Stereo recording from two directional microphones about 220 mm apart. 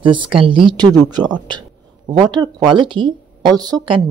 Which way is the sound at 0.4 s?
25° right (ahead or behind).